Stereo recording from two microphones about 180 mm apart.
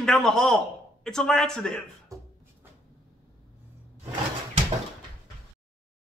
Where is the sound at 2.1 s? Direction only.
20° right (ahead or behind).